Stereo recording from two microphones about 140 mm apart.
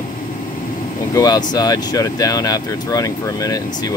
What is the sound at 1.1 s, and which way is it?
Speech, 25° left (ahead or behind).